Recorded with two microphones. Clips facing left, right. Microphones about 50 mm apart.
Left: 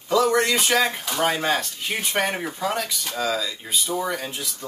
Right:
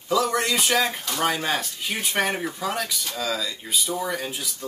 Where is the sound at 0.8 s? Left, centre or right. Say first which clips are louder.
Left 2 dB; centre.